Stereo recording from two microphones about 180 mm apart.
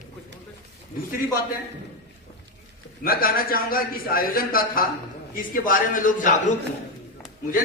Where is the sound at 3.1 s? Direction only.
55° left (ahead or behind).